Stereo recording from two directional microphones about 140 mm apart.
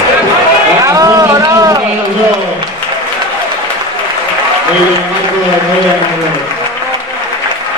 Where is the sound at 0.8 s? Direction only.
25° right (ahead or behind).